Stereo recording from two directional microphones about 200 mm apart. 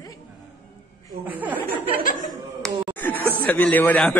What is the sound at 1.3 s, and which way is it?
Speech, 10° right (ahead or behind).